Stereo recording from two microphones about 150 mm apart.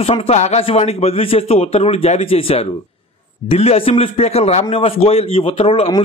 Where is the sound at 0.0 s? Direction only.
40° left (ahead or behind).